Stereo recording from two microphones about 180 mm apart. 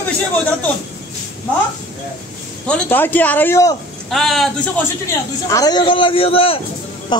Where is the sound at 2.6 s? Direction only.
10° left (ahead or behind).